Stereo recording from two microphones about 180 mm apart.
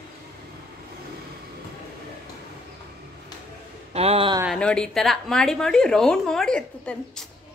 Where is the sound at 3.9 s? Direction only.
35° right (ahead or behind).